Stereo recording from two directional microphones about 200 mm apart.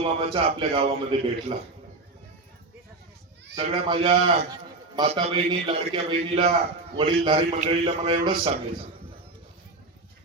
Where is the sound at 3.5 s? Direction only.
25° right (ahead or behind).